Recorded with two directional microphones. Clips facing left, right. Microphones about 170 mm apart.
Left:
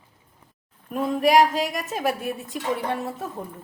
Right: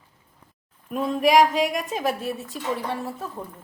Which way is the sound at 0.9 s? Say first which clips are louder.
Even; centre (ahead or behind).